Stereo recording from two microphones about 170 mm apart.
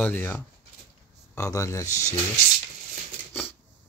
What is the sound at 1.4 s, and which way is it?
Speech, 20° left (ahead or behind).